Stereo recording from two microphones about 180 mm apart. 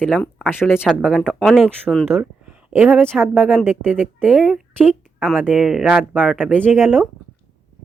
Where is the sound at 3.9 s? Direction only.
10° right (ahead or behind).